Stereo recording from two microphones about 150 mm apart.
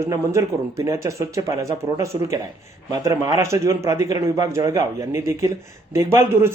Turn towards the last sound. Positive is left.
turn(degrees=-20)  # may be behind; listen again after turning